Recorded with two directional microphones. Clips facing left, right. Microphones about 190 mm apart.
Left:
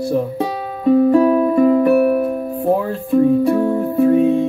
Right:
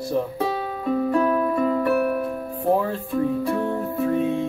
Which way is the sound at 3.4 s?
25° left (ahead or behind).